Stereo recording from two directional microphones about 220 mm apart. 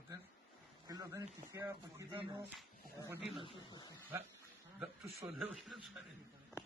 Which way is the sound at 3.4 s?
20° left (ahead or behind).